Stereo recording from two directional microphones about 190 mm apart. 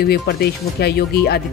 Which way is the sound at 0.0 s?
55° left (ahead or behind).